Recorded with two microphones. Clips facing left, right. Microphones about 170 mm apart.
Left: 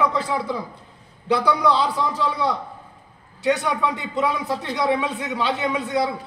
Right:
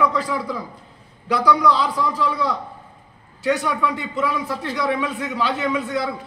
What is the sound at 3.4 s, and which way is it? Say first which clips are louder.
A man's voice: even; 20° left (ahead or behind).